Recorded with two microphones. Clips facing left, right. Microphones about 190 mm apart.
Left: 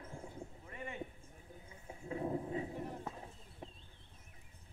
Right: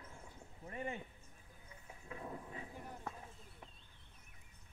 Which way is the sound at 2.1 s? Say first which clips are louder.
Left 10 dB; 30° left (ahead or behind).